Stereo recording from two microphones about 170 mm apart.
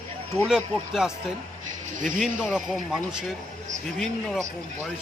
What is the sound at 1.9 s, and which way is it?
Speech, 50° right (ahead or behind).